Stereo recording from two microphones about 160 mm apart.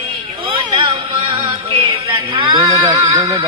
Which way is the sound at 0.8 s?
30° right (ahead or behind).